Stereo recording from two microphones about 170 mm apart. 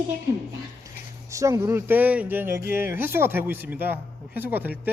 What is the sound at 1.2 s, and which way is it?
Speech, 15° right (ahead or behind).